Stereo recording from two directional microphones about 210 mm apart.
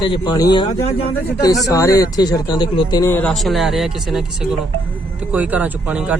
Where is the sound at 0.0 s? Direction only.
20° left (ahead or behind).